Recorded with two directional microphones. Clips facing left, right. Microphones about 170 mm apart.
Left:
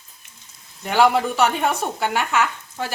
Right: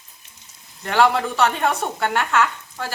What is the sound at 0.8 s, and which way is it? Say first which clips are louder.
Speech: left 1 dB; 10° left (ahead or behind).